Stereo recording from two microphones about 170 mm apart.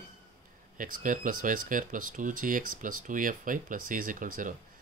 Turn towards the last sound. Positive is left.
turn(degrees=-50)  # may be behind; listen again after turning